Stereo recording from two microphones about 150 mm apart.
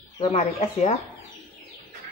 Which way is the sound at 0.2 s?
45° left (ahead or behind).